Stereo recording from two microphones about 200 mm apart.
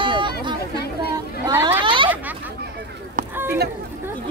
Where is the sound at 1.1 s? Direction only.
10° right (ahead or behind).